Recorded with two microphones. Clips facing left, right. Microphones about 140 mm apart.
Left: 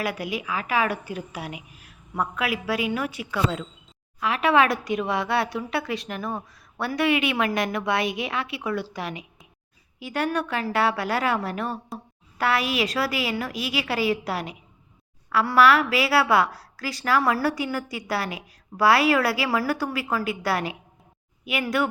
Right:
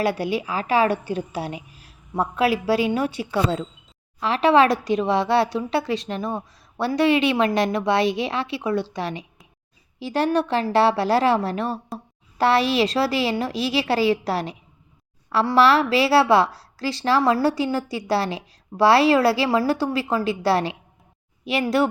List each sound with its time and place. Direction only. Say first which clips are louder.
0.0 s a woman's voice: right 6 dB; 30° right (ahead or behind)